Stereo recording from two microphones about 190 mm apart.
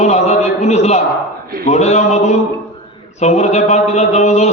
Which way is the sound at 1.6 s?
35° left (ahead or behind).